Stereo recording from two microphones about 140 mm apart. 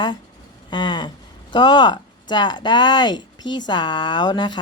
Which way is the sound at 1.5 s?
30° left (ahead or behind).